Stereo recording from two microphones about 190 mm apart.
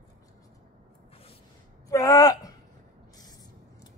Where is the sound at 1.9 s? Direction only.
20° left (ahead or behind).